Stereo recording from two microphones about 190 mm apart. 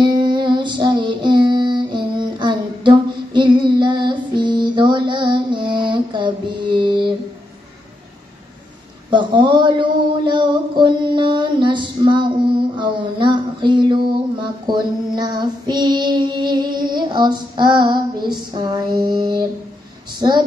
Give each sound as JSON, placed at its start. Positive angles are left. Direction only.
{"t": 0.0, "sound": "music", "side_deg": -25}
{"t": 3.3, "sound": "female singing", "side_deg": -25}
{"t": 9.1, "sound": "a sound", "side_deg": -25}